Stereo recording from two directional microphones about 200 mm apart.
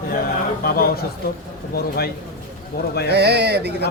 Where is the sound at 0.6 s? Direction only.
50° left (ahead or behind).